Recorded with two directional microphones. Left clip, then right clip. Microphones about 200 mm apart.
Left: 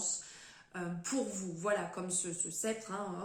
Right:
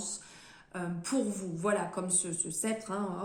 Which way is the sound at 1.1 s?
45° right (ahead or behind).